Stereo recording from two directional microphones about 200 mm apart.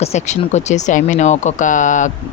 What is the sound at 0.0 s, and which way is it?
Speech, 35° left (ahead or behind).